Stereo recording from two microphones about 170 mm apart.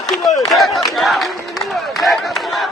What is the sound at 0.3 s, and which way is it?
Speech, centre (ahead or behind).